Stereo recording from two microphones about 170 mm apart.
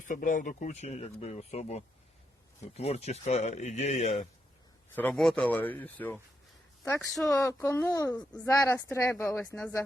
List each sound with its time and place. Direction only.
0.1 s speech: 50° left (ahead or behind)
4.9 s speech: 5° left (ahead or behind)
7.3 s speech: 15° left (ahead or behind)